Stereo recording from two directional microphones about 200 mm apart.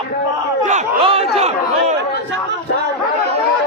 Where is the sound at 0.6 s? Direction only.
35° right (ahead or behind).